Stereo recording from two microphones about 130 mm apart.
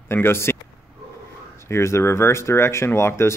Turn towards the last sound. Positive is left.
turn(degrees=20)  # may be behind; listen again after turning